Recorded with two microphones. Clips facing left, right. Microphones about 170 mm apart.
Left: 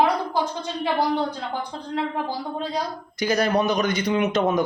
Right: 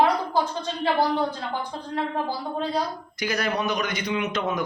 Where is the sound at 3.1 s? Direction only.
35° left (ahead or behind).